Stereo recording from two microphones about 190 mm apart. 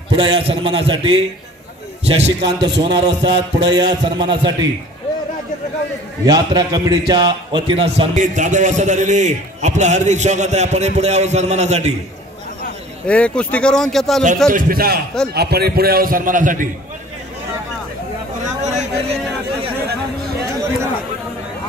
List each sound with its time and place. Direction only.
0.1 s a man's voice: 30° right (ahead or behind)
6.2 s a man's voice: 20° right (ahead or behind); by 11.9 s 35° right (ahead or behind)
13.0 s speech: 5° left (ahead or behind)
14.5 s a man's voice: 50° right (ahead or behind)
18.6 s a sound: 35° right (ahead or behind)